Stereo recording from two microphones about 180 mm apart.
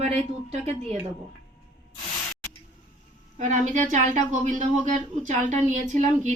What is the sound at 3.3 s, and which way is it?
Speech, 40° right (ahead or behind).